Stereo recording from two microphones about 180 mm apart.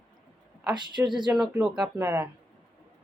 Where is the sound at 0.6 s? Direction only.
25° right (ahead or behind).